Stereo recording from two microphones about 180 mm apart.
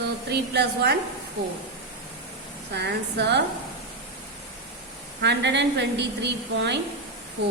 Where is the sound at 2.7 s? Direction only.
70° right (ahead or behind).